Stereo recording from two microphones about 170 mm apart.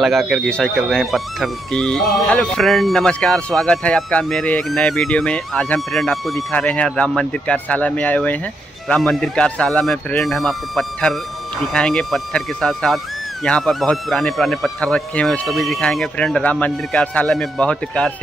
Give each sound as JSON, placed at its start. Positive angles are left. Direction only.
{"t": 0.0, "sound": "speech", "side_deg": 0}